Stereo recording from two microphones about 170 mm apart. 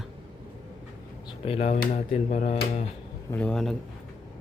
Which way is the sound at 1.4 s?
35° left (ahead or behind).